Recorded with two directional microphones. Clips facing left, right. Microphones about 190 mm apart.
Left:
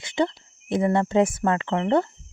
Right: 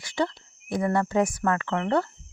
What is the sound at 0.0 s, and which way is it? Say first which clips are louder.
Speech: left 3 dB; 20° left (ahead or behind).